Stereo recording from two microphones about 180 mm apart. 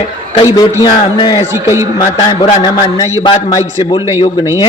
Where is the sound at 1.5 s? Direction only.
15° right (ahead or behind).